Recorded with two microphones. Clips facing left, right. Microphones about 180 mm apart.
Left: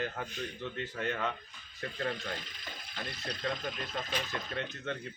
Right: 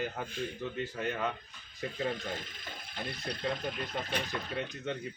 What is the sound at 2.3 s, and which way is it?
Speech, 50° right (ahead or behind).